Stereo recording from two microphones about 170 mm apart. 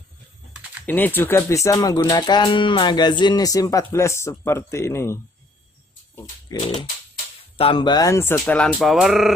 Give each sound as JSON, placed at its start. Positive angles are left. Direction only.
{"t": 0.8, "sound": "music", "side_deg": 10}
{"t": 3.9, "sound": "speech", "side_deg": 15}
{"t": 6.5, "sound": "music", "side_deg": 20}
{"t": 7.5, "sound": "speech", "side_deg": 30}